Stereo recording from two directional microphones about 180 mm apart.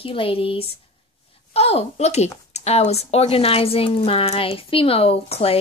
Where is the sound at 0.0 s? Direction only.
30° left (ahead or behind).